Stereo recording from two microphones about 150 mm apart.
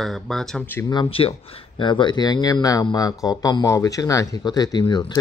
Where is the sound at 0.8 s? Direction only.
35° left (ahead or behind).